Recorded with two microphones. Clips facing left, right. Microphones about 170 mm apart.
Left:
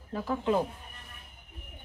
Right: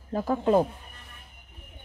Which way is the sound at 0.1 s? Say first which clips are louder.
Right 6 dB; 45° right (ahead or behind).